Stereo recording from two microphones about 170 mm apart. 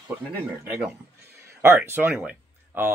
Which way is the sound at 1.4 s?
15° right (ahead or behind).